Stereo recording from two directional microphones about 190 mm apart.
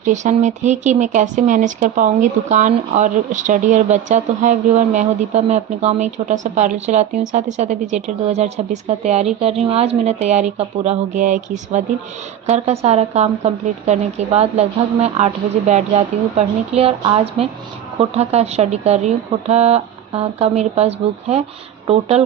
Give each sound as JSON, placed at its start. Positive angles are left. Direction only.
{"t": 0.0, "sound": "speech", "side_deg": -40}
{"t": 12.8, "sound": "speech", "side_deg": -35}